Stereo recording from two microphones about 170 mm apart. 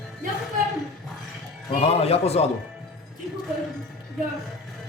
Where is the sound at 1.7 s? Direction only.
35° left (ahead or behind).